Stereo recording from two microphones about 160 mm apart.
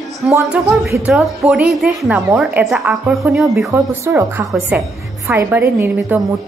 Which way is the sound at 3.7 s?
15° right (ahead or behind).